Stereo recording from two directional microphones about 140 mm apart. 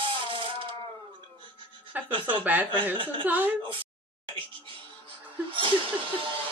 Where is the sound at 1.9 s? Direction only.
10° right (ahead or behind).